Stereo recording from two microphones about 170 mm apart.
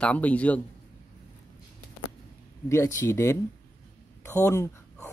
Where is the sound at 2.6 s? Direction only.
15° left (ahead or behind).